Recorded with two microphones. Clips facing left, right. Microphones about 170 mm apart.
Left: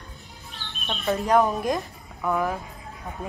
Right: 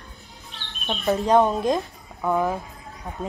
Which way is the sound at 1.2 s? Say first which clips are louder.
Right 2 dB; 25° right (ahead or behind).